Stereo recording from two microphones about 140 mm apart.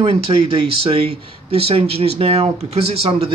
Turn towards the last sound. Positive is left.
turn(degrees=-45)  # may be behind; listen again after turning